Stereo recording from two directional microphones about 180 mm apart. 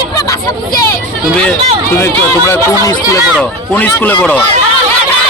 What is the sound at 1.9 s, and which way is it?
Speech, 15° left (ahead or behind).